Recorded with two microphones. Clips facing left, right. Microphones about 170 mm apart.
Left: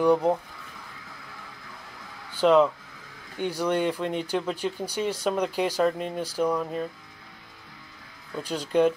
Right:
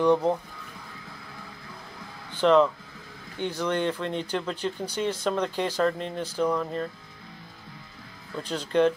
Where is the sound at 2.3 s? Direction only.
10° left (ahead or behind).